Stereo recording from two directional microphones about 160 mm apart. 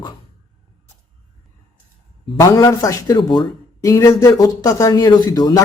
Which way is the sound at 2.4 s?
20° left (ahead or behind).